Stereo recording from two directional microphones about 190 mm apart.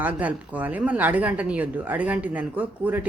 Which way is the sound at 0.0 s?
10° right (ahead or behind).